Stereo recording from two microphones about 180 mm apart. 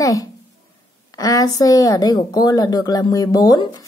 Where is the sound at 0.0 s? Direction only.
20° left (ahead or behind).